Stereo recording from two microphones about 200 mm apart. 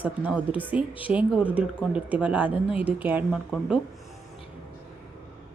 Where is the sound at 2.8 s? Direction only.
10° right (ahead or behind).